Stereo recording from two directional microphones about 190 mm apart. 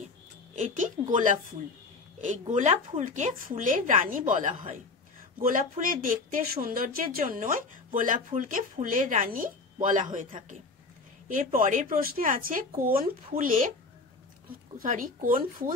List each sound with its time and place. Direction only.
1.1 s speech: 40° right (ahead or behind)
14.9 s speech: 45° right (ahead or behind)